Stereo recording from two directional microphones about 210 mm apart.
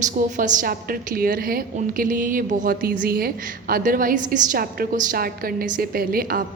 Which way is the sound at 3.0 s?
45° right (ahead or behind).